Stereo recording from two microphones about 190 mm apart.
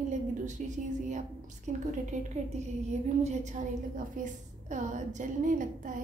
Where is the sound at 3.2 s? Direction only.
40° right (ahead or behind).